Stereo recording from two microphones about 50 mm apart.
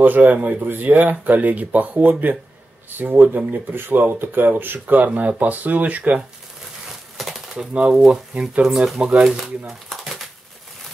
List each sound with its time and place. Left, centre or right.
0.0 s speech: right
7.2 s typewriter: centre
7.5 s speech: centre